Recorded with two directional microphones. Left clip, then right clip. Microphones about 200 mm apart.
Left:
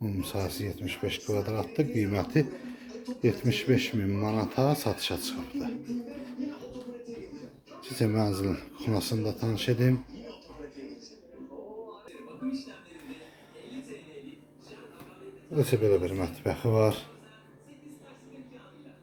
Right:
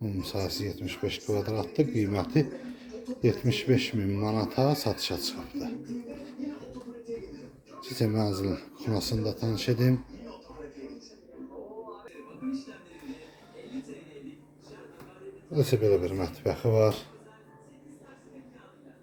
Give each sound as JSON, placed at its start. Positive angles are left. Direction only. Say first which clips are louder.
{"t": 0.0, "sound": "speech", "louder": "even", "side_deg": 5}
{"t": 7.8, "sound": "speech", "louder": "left 1 dB", "side_deg": 5}
{"t": 13.1, "sound": "a sound", "louder": "right 2 dB", "side_deg": 5}
{"t": 15.5, "sound": "speech", "louder": "even", "side_deg": 0}